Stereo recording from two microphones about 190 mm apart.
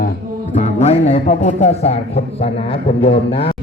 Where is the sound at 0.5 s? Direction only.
35° left (ahead or behind).